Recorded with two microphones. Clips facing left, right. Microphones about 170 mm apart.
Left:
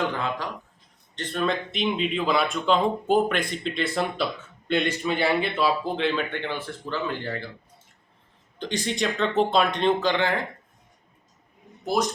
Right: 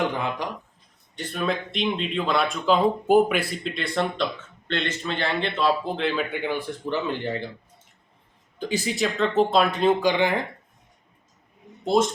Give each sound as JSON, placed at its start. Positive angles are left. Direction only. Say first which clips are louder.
{"t": 0.1, "sound": "speech", "louder": "right 1 dB", "side_deg": -15}
{"t": 8.5, "sound": "speech", "louder": "right 2 dB", "side_deg": -5}
{"t": 11.9, "sound": "speech", "louder": "right 4 dB", "side_deg": -25}